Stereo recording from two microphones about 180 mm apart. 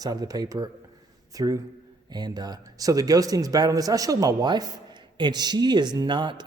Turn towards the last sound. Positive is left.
turn(degrees=-25)  # may be behind; listen again after turning